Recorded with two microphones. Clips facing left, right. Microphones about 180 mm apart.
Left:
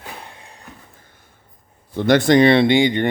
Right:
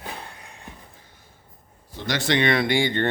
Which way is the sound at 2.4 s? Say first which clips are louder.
Left 8 dB; 30° left (ahead or behind).